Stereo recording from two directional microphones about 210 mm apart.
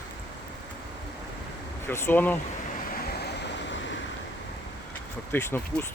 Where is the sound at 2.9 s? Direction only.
50° left (ahead or behind).